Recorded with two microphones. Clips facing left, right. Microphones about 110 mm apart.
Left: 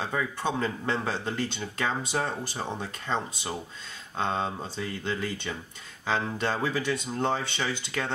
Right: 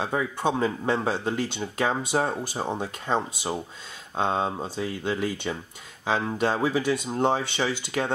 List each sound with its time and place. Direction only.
0.1 s speech: 15° right (ahead or behind)